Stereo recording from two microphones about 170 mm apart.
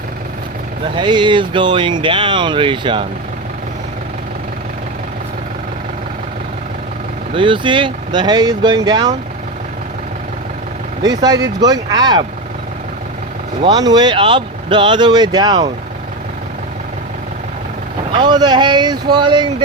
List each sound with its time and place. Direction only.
0.9 s speech: 25° right (ahead or behind)
7.3 s speech: 30° right (ahead or behind)
11.0 s speech: 25° right (ahead or behind)
13.6 s speech: 25° right (ahead or behind)
18.1 s speech: 25° right (ahead or behind)